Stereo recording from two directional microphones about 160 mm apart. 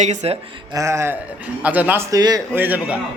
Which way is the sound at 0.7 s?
20° right (ahead or behind).